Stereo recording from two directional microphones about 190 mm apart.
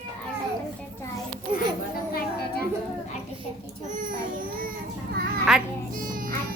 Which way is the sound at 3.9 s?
45° right (ahead or behind).